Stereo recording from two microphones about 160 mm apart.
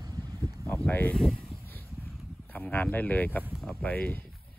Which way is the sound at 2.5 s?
10° left (ahead or behind).